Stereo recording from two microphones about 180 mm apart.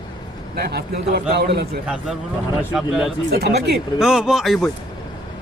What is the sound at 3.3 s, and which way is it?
Speech, 65° right (ahead or behind).